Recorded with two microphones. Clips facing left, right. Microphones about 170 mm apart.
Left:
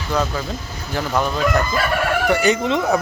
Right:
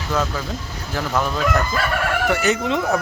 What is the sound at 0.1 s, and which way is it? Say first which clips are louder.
A man's voice: left 1 dB; centre (ahead or behind).